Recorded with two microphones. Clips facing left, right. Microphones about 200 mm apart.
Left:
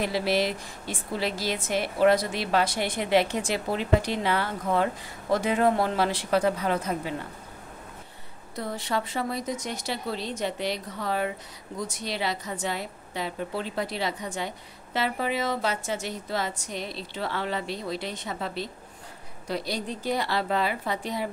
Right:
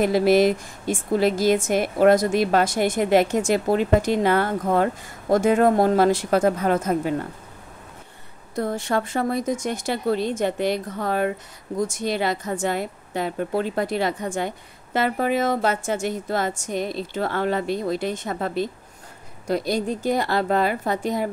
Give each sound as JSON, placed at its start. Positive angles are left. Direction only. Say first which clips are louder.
{"t": 0.0, "sound": "a woman's voice", "louder": "right 9 dB", "side_deg": -50}
{"t": 8.5, "sound": "a woman's voice", "louder": "right 6 dB", "side_deg": -50}